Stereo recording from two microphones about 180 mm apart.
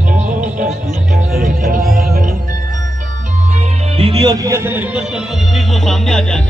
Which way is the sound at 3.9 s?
30° right (ahead or behind).